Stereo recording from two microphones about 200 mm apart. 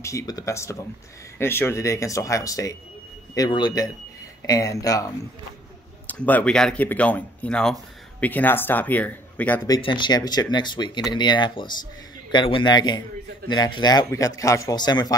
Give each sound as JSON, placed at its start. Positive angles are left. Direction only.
{"t": 0.0, "sound": "a man's voice", "side_deg": 15}
{"t": 9.7, "sound": "a man's voice", "side_deg": 25}